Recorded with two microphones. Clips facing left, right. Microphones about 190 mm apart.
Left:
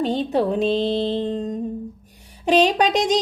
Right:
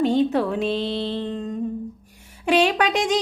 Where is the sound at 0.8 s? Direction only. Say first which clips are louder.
Left 4 dB; 45° left (ahead or behind).